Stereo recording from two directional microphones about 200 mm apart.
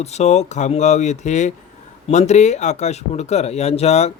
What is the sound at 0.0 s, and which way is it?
Speech, 35° left (ahead or behind).